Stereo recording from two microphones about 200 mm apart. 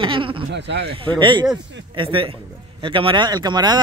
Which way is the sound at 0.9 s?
25° right (ahead or behind).